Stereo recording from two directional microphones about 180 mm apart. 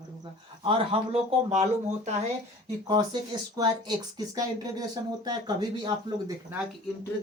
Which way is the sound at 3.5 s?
20° right (ahead or behind).